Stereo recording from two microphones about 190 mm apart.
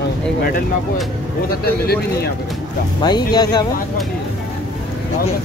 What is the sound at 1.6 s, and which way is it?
Speech, 55° left (ahead or behind).